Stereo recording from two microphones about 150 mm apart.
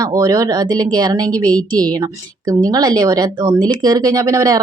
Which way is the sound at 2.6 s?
25° right (ahead or behind).